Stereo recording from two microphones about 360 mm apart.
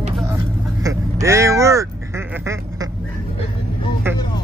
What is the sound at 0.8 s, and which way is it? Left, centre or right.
Quack, centre.